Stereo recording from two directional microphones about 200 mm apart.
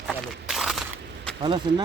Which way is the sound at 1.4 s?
25° right (ahead or behind).